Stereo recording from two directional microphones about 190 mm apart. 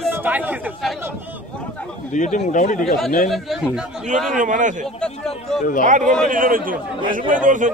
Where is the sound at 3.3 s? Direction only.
Centre (ahead or behind).